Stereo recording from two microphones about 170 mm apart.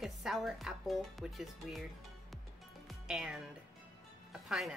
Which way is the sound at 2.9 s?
5° right (ahead or behind).